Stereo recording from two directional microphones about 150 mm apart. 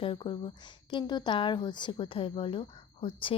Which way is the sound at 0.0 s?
35° left (ahead or behind).